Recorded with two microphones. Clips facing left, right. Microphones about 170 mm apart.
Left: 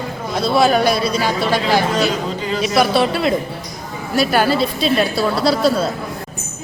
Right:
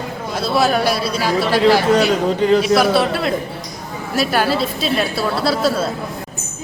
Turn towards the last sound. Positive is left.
turn(degrees=0)  # may be behind; listen again after turning